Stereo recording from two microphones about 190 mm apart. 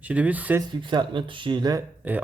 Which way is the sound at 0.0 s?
10° right (ahead or behind).